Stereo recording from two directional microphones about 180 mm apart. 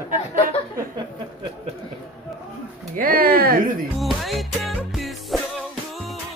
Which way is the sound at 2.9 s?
55° right (ahead or behind).